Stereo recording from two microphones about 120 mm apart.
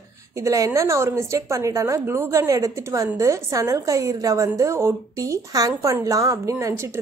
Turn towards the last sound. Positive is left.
turn(degrees=-25)  # may be behind; listen again after turning